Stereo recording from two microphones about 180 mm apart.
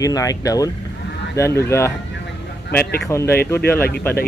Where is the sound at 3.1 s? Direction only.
15° left (ahead or behind).